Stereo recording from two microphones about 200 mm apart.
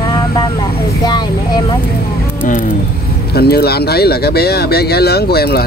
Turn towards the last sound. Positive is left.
turn(degrees=50)  # may be behind; listen again after turning